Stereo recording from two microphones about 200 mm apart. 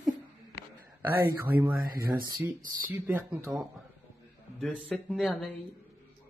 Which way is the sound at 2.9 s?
10° right (ahead or behind).